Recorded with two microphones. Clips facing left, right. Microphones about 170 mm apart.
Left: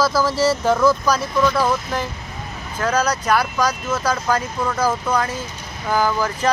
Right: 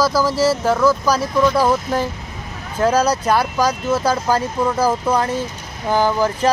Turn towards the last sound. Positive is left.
turn(degrees=-25)  # may be behind; listen again after turning